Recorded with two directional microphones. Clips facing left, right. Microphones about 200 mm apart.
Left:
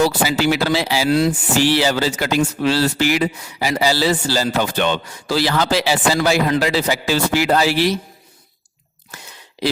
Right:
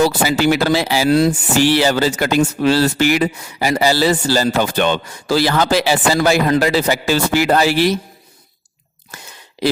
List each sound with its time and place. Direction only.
0.3 s speech: 50° right (ahead or behind)
1.6 s speech: 55° right (ahead or behind)
9.1 s a sound: 50° right (ahead or behind)